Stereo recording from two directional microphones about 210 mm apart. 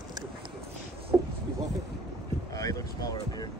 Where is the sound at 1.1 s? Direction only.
15° right (ahead or behind).